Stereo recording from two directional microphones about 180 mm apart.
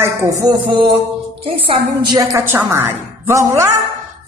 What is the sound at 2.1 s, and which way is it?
A woman's voice, 20° right (ahead or behind).